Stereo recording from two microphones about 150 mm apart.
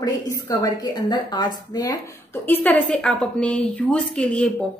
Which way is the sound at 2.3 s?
15° left (ahead or behind).